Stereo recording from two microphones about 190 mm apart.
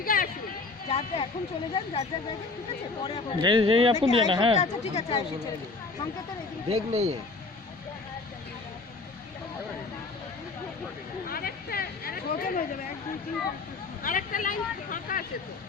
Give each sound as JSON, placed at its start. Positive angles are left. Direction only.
{"t": 0.0, "sound": "a sound", "side_deg": 50}
{"t": 0.9, "sound": "speech", "side_deg": 30}
{"t": 3.4, "sound": "speech", "side_deg": -25}
{"t": 4.5, "sound": "speech", "side_deg": 35}
{"t": 6.7, "sound": "speech", "side_deg": -35}
{"t": 11.3, "sound": "a sound", "side_deg": 50}
{"t": 14.0, "sound": "speech", "side_deg": 45}